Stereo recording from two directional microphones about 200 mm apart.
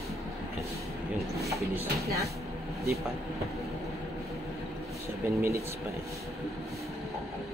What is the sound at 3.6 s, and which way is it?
Vehicle, centre (ahead or behind).